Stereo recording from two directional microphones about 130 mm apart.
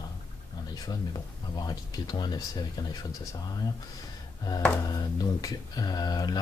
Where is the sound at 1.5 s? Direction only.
30° left (ahead or behind).